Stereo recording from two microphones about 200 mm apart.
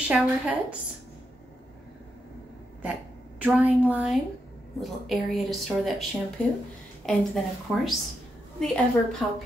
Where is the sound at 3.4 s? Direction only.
5° right (ahead or behind).